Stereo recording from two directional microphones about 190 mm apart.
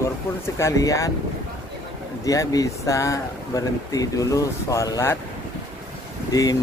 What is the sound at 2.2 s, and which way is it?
Speech, 15° left (ahead or behind).